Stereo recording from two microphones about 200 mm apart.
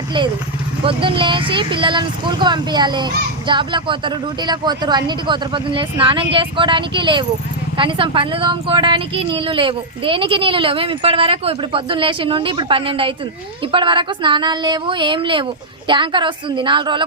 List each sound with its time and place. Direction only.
0.9 s a woman's voice: 25° right (ahead or behind)